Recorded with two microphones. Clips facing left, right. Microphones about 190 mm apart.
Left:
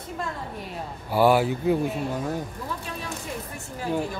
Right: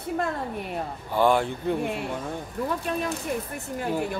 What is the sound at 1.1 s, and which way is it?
Speech, 5° left (ahead or behind).